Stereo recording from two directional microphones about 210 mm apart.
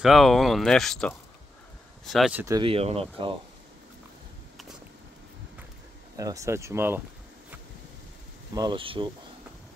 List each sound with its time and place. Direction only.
0.0 s speech: centre (ahead or behind)
2.4 s speech: 20° right (ahead or behind)
6.1 s speech: 15° right (ahead or behind)
8.5 s speech: 20° right (ahead or behind)